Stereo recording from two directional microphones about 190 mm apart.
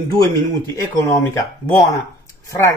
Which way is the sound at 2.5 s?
15° left (ahead or behind).